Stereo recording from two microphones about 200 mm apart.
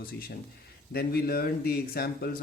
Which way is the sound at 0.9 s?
50° left (ahead or behind).